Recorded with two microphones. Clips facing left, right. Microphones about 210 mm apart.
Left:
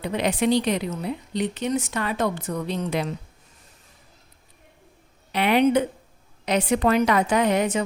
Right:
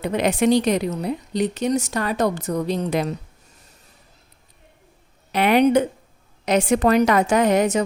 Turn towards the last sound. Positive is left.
turn(degrees=-40)  # may be behind; listen again after turning